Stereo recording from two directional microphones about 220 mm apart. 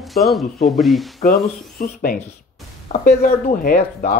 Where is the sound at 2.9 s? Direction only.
30° left (ahead or behind).